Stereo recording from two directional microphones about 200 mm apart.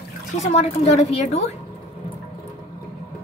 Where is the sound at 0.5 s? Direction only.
35° left (ahead or behind).